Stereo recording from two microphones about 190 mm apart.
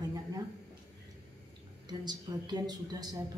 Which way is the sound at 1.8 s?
20° right (ahead or behind).